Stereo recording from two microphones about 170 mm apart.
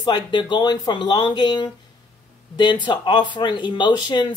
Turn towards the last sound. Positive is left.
turn(degrees=25)  # may be behind; listen again after turning